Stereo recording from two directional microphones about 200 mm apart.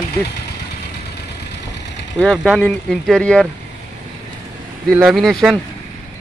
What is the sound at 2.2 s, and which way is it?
Speech, 5° left (ahead or behind).